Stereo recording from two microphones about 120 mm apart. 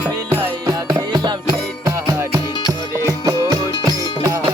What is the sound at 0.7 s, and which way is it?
Music, 30° right (ahead or behind).